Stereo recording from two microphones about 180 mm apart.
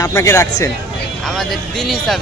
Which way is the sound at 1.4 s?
Centre (ahead or behind).